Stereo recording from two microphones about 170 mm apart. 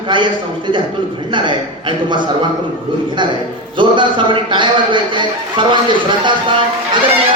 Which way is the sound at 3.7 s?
30° right (ahead or behind).